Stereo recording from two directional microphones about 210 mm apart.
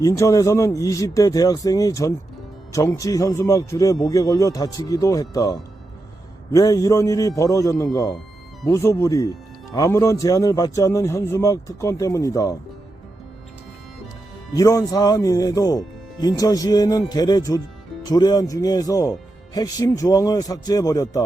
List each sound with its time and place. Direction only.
0.0 s a man's voice: 15° left (ahead or behind)
14.5 s a man's voice: 15° left (ahead or behind)